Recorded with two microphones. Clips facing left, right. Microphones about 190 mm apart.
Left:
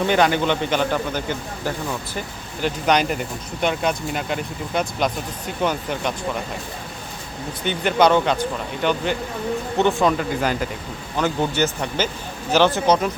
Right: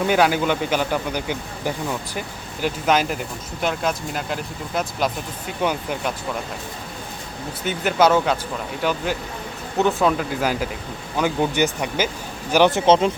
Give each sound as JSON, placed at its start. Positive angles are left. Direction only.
{"t": 0.1, "sound": "a man's voice", "side_deg": -5}
{"t": 7.6, "sound": "a man's voice", "side_deg": -5}